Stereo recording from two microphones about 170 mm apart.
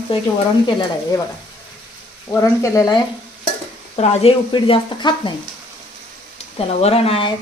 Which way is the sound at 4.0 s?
30° left (ahead or behind).